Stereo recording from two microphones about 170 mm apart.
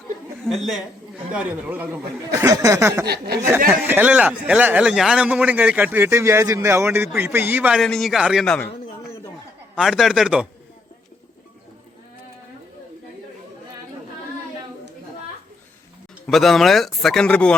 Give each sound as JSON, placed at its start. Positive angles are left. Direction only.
{"t": 0.4, "sound": "a man's voice", "side_deg": 0}
{"t": 2.4, "sound": "speech", "side_deg": -20}
{"t": 3.1, "sound": "speech", "side_deg": -70}
{"t": 3.7, "sound": "a man's voice", "side_deg": -10}
{"t": 9.7, "sound": "a man's voice", "side_deg": 0}
{"t": 16.2, "sound": "a man's voice", "side_deg": 0}